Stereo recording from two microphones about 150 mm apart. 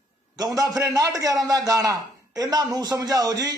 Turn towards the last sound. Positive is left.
turn(degrees=-25)  # may be behind; listen again after turning